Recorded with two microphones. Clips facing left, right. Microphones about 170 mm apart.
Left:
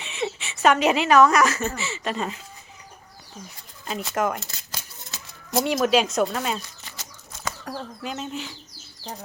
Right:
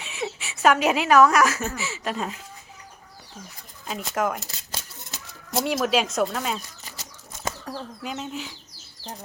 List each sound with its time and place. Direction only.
0.0 s a woman's voice: 5° right (ahead or behind)
3.8 s speech: centre (ahead or behind)
5.5 s speech: 5° right (ahead or behind)
6.8 s a sound: 35° right (ahead or behind)
7.6 s speech: centre (ahead or behind)